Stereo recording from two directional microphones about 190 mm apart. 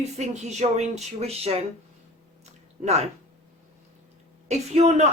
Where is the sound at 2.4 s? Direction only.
35° right (ahead or behind).